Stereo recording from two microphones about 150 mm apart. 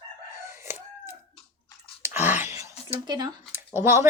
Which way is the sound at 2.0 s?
15° right (ahead or behind).